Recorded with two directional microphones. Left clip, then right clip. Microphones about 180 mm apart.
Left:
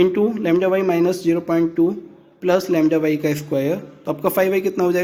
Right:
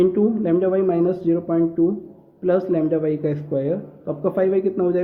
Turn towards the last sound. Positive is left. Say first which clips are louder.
# left 1 dB
turn(degrees=25)  # may be behind; listen again after turning